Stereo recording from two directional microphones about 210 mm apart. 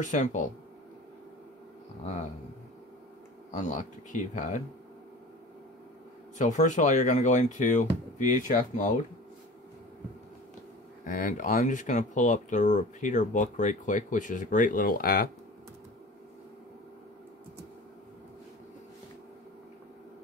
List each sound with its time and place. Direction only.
0.0 s speech: 35° left (ahead or behind)
3.5 s speech: 35° left (ahead or behind)
6.3 s speech: 35° left (ahead or behind)
11.1 s speech: 40° left (ahead or behind)